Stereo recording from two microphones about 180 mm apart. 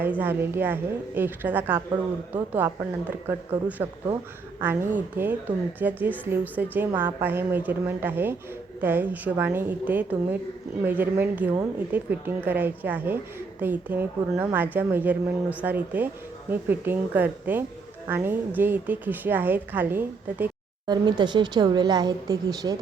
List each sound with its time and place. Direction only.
0.0 s a woman's voice: 10° right (ahead or behind)
20.8 s a woman's voice: 25° right (ahead or behind)